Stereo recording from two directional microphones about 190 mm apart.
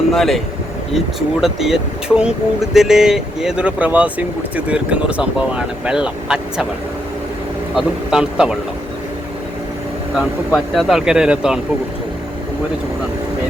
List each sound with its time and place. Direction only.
0.1 s speech: centre (ahead or behind)
7.8 s speech: 5° right (ahead or behind)
10.2 s speech: centre (ahead or behind)